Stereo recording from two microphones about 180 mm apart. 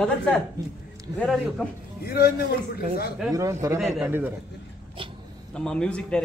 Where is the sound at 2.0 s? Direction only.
60° left (ahead or behind).